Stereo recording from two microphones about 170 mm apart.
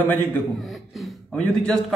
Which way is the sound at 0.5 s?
Centre (ahead or behind).